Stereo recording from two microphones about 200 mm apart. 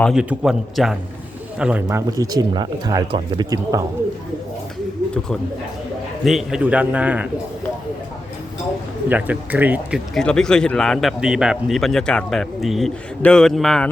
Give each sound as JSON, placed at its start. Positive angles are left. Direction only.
{"t": 0.0, "sound": "a man's voice", "side_deg": -5}
{"t": 6.2, "sound": "speech", "side_deg": 0}
{"t": 9.0, "sound": "speech", "side_deg": -5}
{"t": 10.2, "sound": "a man's voice", "side_deg": 5}